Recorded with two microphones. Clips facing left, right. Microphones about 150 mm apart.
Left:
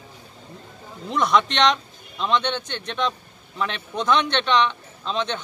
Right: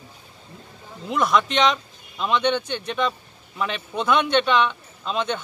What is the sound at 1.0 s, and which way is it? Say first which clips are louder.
A man's voice: even; 5° right (ahead or behind).